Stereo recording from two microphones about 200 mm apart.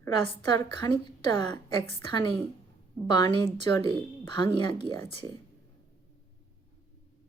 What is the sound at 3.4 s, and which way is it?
A woman's voice, 25° left (ahead or behind).